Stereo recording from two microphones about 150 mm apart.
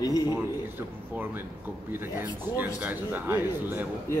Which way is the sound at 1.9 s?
15° right (ahead or behind).